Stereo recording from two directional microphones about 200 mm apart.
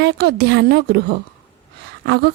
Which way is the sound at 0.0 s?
55° right (ahead or behind).